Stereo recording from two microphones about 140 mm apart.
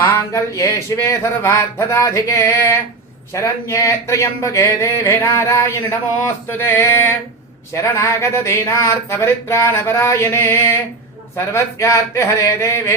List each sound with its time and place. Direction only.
0.3 s speech: 20° left (ahead or behind)